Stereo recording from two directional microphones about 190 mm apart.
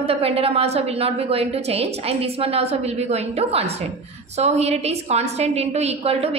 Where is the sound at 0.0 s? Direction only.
30° right (ahead or behind).